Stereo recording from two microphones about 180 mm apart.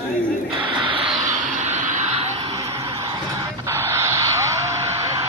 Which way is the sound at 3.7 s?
15° right (ahead or behind).